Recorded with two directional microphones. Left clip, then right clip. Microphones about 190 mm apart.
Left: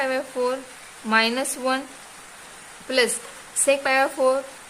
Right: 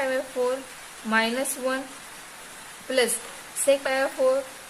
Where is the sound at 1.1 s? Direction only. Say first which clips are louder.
Left 3 dB; 30° left (ahead or behind).